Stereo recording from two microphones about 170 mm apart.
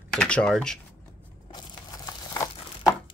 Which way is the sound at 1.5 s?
20° left (ahead or behind).